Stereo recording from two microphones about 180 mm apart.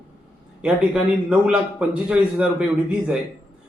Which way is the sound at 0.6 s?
5° right (ahead or behind).